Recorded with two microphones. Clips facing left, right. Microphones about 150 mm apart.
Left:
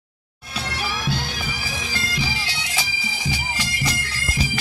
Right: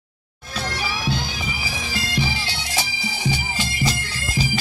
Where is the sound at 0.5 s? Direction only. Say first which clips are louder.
Right 1 dB; 5° left (ahead or behind).